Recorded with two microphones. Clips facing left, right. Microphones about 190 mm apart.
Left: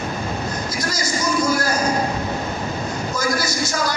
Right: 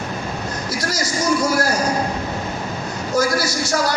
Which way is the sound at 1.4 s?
80° right.